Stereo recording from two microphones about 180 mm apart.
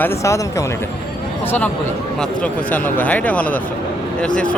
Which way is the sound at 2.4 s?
10° left (ahead or behind).